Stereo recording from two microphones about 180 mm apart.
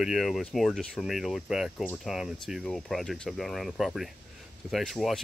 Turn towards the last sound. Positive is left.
turn(degrees=0)  # may be behind; listen again after turning